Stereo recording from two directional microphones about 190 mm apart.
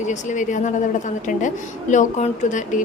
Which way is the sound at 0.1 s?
40° left (ahead or behind).